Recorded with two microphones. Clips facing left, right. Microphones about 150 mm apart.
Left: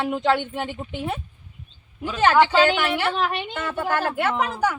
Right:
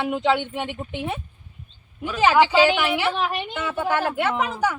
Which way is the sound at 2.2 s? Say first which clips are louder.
Even; 5° right (ahead or behind).